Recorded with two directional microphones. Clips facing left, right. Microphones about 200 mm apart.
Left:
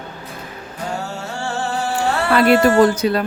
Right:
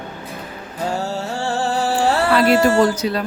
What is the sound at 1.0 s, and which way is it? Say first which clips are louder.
Music: right 3 dB; 35° right (ahead or behind).